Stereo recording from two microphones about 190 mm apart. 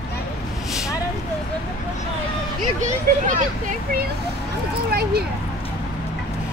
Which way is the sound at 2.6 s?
40° right (ahead or behind).